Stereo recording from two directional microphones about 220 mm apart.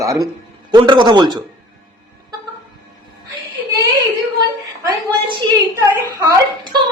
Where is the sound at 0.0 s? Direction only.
15° right (ahead or behind).